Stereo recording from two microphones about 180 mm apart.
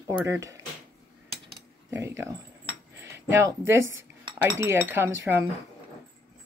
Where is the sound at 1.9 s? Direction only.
15° right (ahead or behind).